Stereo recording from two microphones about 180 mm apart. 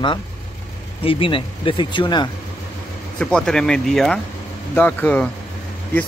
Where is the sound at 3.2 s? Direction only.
5° left (ahead or behind).